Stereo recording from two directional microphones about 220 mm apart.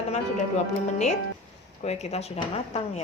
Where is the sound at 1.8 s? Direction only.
30° left (ahead or behind).